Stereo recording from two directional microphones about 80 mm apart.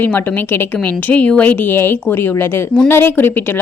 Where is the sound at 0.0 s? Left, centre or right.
Left.